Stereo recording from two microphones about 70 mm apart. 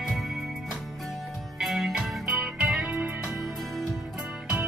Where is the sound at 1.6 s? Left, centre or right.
Centre.